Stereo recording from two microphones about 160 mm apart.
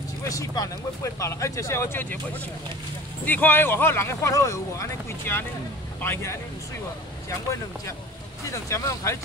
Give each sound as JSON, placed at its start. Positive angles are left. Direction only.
{"t": 0.2, "sound": "speech", "side_deg": 20}
{"t": 3.3, "sound": "speech", "side_deg": 10}
{"t": 8.5, "sound": "speech", "side_deg": 20}